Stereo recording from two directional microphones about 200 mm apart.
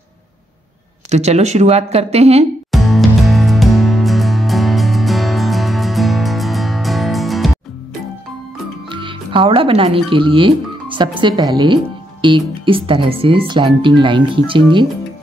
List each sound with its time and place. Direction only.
1.1 s speech: 35° right (ahead or behind)
2.7 s music: centre (ahead or behind)
8.8 s speech: 25° right (ahead or behind)